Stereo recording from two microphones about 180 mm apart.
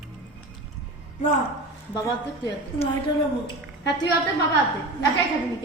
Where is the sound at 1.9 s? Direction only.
20° left (ahead or behind).